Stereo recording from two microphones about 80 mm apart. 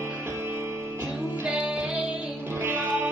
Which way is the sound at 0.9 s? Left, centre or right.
Centre.